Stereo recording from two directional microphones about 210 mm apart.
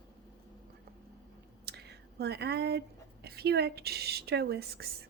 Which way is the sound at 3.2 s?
50° right (ahead or behind).